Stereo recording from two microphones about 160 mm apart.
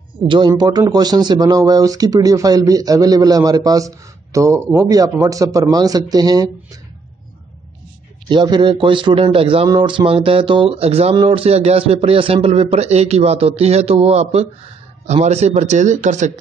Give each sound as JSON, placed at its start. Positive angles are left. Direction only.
{"t": 0.3, "sound": "speech", "side_deg": -25}
{"t": 8.3, "sound": "a man's voice", "side_deg": -30}